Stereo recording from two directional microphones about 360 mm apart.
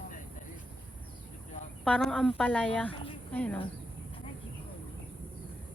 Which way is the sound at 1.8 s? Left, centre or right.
Centre.